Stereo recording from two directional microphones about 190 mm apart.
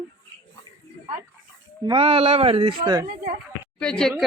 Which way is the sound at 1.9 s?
30° right (ahead or behind).